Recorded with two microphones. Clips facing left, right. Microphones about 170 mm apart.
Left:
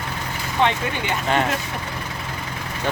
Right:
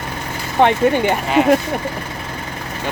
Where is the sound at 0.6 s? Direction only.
55° right (ahead or behind).